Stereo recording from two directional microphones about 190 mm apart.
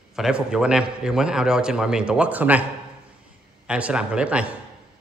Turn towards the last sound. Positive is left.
turn(degrees=-5)  # may be behind; listen again after turning